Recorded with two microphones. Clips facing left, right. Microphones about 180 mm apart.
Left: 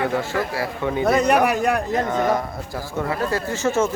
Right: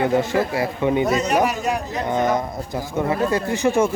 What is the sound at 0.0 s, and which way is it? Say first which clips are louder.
A man's voice: right 4 dB; 20° right (ahead or behind).